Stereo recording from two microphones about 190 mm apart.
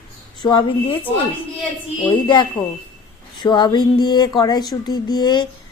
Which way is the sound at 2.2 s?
25° left (ahead or behind).